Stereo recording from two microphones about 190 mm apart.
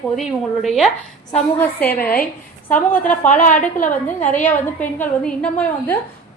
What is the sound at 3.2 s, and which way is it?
Speech, 40° left (ahead or behind).